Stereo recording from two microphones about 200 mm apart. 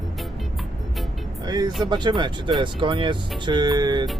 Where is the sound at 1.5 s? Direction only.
20° right (ahead or behind).